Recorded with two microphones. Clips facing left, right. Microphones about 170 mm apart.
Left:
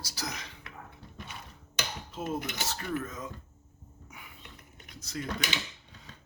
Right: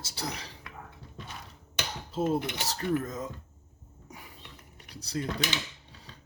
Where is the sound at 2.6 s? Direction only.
35° right (ahead or behind).